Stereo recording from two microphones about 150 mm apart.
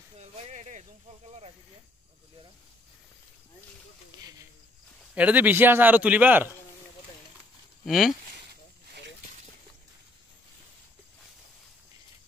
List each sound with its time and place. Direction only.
0.2 s a sound: 45° right (ahead or behind)
5.1 s a man's voice: 10° right (ahead or behind)
7.8 s speech: centre (ahead or behind)